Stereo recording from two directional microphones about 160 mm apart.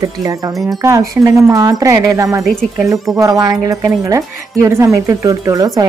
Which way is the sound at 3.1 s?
20° right (ahead or behind).